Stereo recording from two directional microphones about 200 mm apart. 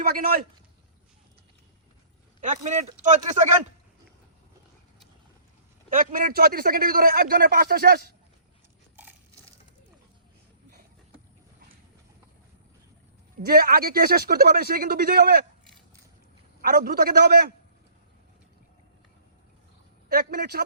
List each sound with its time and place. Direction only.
0.0 s a man's voice: 50° right (ahead or behind)
2.4 s speech: 40° right (ahead or behind)
5.9 s a man's voice: 40° right (ahead or behind)
13.4 s a man's voice: 50° right (ahead or behind)
16.6 s a man's voice: 50° right (ahead or behind)
20.1 s a man's voice: 50° right (ahead or behind)